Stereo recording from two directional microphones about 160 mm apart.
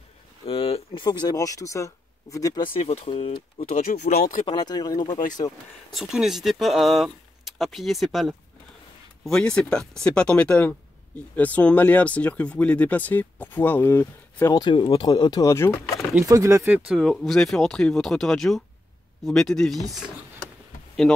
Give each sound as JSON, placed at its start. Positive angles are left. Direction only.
{"t": 0.5, "sound": "speech", "side_deg": 35}
{"t": 2.8, "sound": "speech", "side_deg": 40}
{"t": 4.5, "sound": "speech", "side_deg": 25}
{"t": 5.9, "sound": "speech", "side_deg": 0}
{"t": 16.3, "sound": "speech", "side_deg": -20}